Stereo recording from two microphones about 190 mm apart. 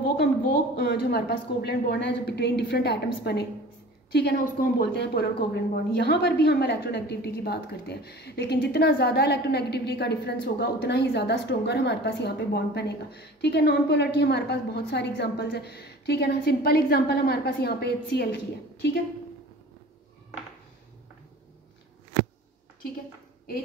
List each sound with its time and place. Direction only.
0.7 s a woman's voice: 55° left (ahead or behind)